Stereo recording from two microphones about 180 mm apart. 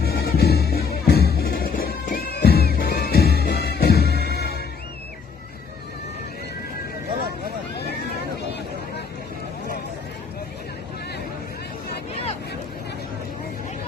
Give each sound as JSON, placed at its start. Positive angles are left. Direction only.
{"t": 0.0, "sound": "music", "side_deg": 60}